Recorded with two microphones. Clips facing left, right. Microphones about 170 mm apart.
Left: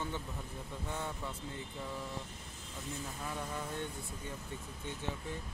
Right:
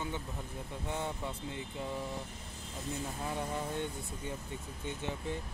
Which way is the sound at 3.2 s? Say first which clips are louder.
Right 4 dB; 25° right (ahead or behind).